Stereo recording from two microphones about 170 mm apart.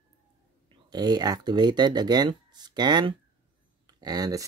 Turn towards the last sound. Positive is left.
turn(degrees=-20)  # may be behind; listen again after turning